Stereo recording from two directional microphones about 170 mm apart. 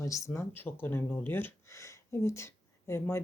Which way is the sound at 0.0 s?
15° left (ahead or behind).